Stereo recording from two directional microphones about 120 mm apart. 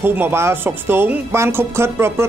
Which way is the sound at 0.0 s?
20° right (ahead or behind).